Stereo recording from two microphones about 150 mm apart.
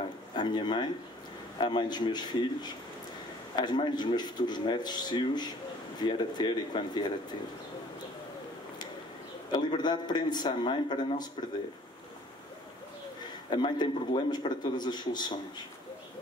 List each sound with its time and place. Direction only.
0.4 s a man's voice: 30° left (ahead or behind)
9.5 s a man's voice: 30° left (ahead or behind)
13.5 s a man's voice: 30° left (ahead or behind)